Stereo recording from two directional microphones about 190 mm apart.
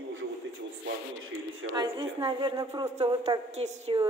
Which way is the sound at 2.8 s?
35° right (ahead or behind).